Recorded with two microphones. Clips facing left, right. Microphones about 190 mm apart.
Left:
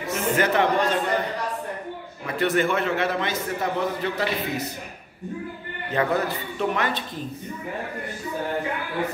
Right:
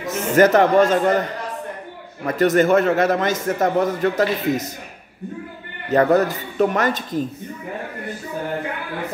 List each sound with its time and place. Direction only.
0.0 s speech: 45° right (ahead or behind)
2.2 s a man's voice: 40° right (ahead or behind)
5.9 s a man's voice: 45° right (ahead or behind)